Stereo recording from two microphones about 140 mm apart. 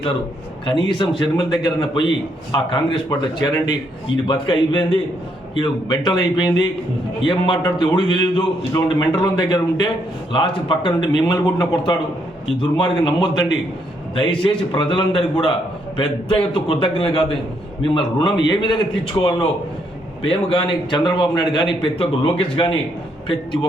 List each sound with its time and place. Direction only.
0.6 s a man's voice: 35° left (ahead or behind)
20.2 s speech: 40° left (ahead or behind)